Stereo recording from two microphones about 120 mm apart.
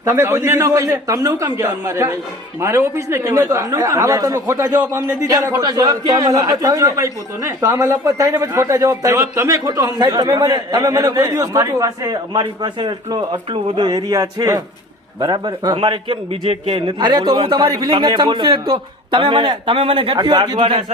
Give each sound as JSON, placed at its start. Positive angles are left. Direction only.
{"t": 0.0, "sound": "speech", "side_deg": -25}